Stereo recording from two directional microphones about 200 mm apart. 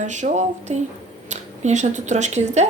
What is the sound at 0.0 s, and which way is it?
Speech, 35° right (ahead or behind).